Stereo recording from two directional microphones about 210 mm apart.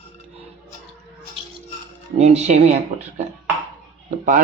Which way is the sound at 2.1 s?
30° right (ahead or behind).